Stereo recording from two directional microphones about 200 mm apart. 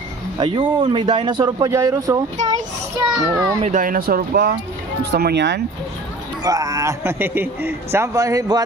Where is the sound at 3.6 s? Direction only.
40° right (ahead or behind); by 5.6 s 60° right (ahead or behind).